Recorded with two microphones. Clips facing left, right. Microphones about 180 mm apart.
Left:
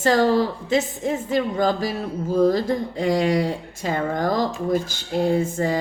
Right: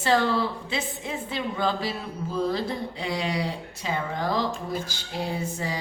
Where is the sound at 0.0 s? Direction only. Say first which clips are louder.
Left 5 dB; 40° left (ahead or behind).